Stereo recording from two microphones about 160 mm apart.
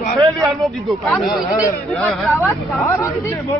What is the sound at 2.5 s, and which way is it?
Speech, 15° left (ahead or behind).